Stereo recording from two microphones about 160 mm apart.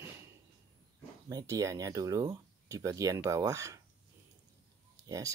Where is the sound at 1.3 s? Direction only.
20° right (ahead or behind).